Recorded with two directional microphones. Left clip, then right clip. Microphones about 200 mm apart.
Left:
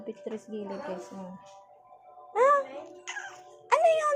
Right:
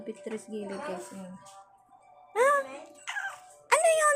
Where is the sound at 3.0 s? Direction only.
20° right (ahead or behind).